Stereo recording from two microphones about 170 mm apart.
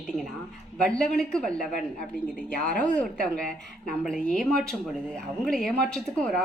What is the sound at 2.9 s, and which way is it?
A woman's voice, 5° left (ahead or behind).